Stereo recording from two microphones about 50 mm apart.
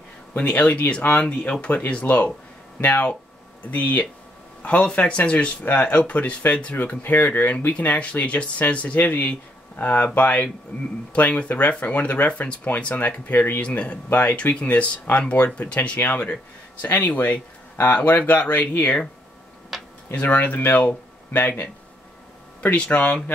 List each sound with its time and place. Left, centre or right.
0.4 s speech: left
6.8 s speech: left
14.0 s speech: left
14.3 s speech: left
20.2 s speech: left
22.8 s speech: left